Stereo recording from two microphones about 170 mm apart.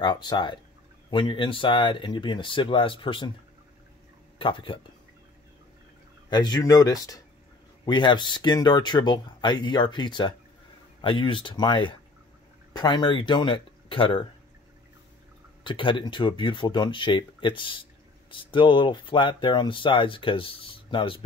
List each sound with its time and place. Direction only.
0.0 s speech: 25° left (ahead or behind)
4.4 s speech: 30° left (ahead or behind)
6.3 s speech: 25° left (ahead or behind)
15.6 s speech: 30° left (ahead or behind)